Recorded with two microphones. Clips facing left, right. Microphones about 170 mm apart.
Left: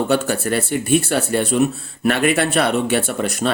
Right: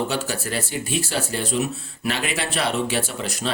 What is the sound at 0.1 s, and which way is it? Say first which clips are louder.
Speech: left 8 dB; 55° left (ahead or behind).